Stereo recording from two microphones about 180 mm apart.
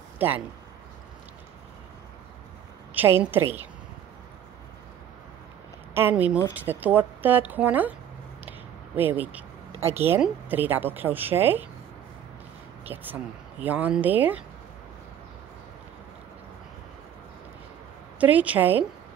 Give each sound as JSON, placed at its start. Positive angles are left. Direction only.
{"t": 0.2, "sound": "speech", "side_deg": -10}
{"t": 2.9, "sound": "a woman's voice", "side_deg": -10}
{"t": 5.9, "sound": "speech", "side_deg": -10}
{"t": 8.5, "sound": "a sound", "side_deg": -10}
{"t": 9.8, "sound": "speech", "side_deg": -35}
{"t": 10.0, "sound": "speech", "side_deg": -10}
{"t": 12.8, "sound": "speech", "side_deg": -10}
{"t": 18.2, "sound": "speech", "side_deg": -10}